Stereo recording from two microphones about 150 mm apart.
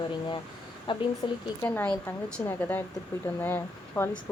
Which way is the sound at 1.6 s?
10° left (ahead or behind).